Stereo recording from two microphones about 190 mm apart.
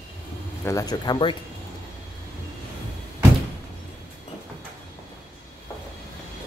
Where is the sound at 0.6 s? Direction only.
20° left (ahead or behind).